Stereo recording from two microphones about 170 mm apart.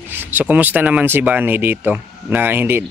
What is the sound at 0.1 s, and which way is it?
A man's voice, 10° right (ahead or behind).